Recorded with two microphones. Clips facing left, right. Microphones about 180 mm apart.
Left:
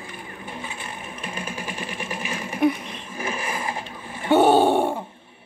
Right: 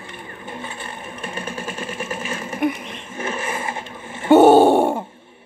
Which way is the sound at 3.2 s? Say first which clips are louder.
Right 3 dB; 25° right (ahead or behind).